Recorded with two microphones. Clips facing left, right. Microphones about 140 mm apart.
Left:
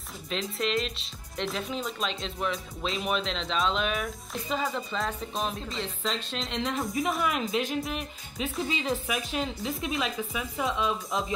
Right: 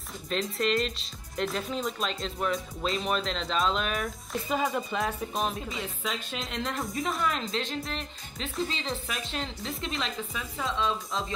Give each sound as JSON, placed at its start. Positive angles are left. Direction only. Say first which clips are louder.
{"t": 0.3, "sound": "speech", "louder": "right 2 dB", "side_deg": 0}
{"t": 10.6, "sound": "speech", "louder": "left 1 dB", "side_deg": 15}